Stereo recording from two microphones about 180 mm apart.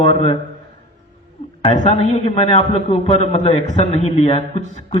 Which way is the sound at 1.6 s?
35° left (ahead or behind).